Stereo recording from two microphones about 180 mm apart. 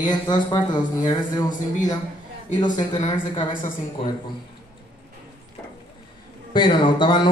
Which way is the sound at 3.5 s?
50° left (ahead or behind).